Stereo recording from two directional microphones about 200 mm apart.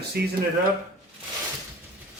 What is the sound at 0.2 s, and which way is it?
Speech, 55° right (ahead or behind).